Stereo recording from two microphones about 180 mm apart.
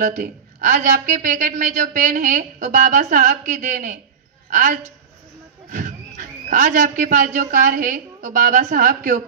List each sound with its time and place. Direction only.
0.0 s a woman's voice: 45° right (ahead or behind)